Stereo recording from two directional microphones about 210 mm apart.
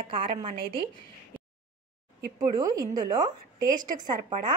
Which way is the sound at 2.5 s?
20° right (ahead or behind).